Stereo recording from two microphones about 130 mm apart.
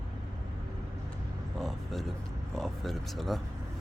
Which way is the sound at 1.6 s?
Centre (ahead or behind).